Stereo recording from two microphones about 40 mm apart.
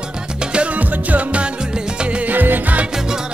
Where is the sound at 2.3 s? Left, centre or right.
Right.